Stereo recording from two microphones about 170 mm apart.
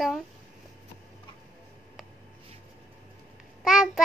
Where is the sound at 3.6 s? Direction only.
Centre (ahead or behind).